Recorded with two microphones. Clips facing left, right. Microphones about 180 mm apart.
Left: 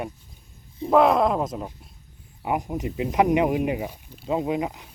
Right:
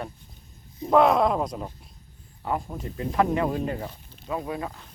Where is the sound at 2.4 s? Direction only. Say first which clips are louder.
Left 4 dB; 15° left (ahead or behind).